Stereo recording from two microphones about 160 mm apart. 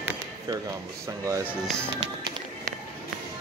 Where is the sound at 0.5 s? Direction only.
25° right (ahead or behind).